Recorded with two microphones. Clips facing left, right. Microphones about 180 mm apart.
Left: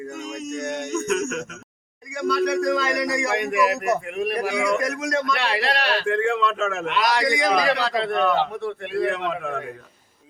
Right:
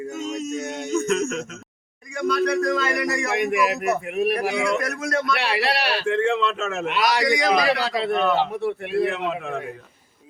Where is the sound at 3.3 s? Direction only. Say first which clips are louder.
Even; 15° right (ahead or behind).